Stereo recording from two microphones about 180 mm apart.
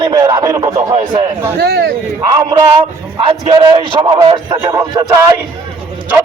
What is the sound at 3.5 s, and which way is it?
Speech, 25° right (ahead or behind).